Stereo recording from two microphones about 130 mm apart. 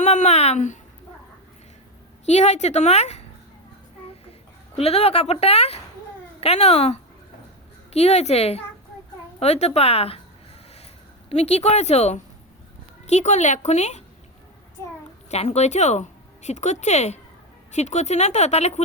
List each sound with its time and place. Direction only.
0.0 s speech: 65° left (ahead or behind)
2.2 s speech: 60° left (ahead or behind)
4.8 s speech: 50° left (ahead or behind)
11.3 s speech: 55° left (ahead or behind)
15.3 s a woman's voice: 60° left (ahead or behind)